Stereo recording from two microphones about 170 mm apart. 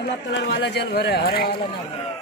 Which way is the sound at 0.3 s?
85° left.